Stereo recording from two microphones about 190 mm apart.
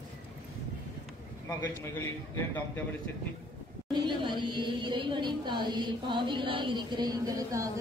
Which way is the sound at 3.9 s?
25° right (ahead or behind).